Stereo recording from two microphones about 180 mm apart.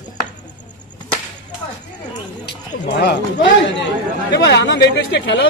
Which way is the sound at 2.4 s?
65° left (ahead or behind).